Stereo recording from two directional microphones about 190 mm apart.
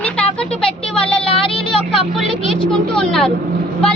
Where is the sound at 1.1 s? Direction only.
30° left (ahead or behind).